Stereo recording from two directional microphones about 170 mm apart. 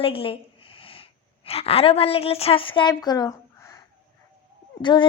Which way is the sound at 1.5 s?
35° left (ahead or behind).